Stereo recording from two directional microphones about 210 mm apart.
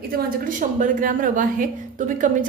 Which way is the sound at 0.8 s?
40° right (ahead or behind).